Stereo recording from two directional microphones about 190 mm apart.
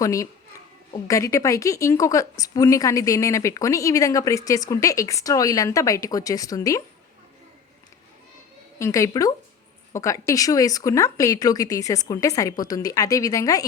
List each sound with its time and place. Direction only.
0.0 s speech: 15° left (ahead or behind)
8.8 s speech: 15° left (ahead or behind)